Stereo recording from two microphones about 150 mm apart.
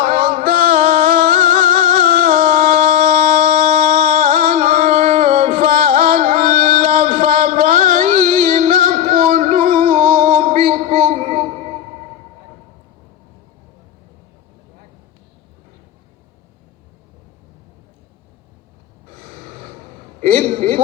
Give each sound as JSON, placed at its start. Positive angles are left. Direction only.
{"t": 0.0, "sound": "music", "side_deg": -60}
{"t": 19.1, "sound": "gasp", "side_deg": -60}
{"t": 20.2, "sound": "a sound", "side_deg": -60}